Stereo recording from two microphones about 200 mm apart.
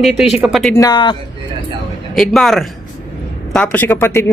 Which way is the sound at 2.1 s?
Centre (ahead or behind).